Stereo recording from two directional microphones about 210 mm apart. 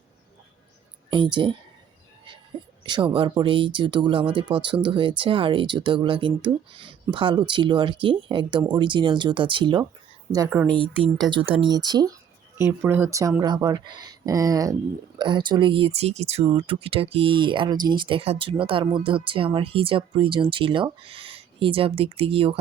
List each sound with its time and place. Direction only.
1.1 s speech: 25° right (ahead or behind)
2.8 s speech: 20° right (ahead or behind)